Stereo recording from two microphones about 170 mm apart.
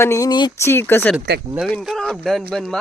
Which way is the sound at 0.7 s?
15° left (ahead or behind).